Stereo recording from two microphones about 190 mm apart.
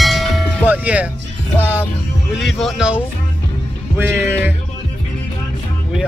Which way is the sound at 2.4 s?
Centre (ahead or behind).